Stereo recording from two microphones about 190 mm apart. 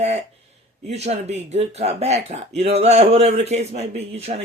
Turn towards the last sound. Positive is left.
turn(degrees=-35)  # may be behind; listen again after turning